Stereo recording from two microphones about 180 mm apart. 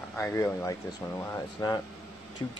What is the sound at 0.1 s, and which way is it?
Speech, 15° left (ahead or behind).